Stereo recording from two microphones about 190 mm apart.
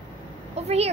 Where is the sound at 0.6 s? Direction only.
35° right (ahead or behind).